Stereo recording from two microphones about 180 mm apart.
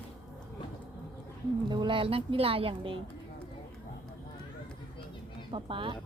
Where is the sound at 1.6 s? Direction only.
25° right (ahead or behind).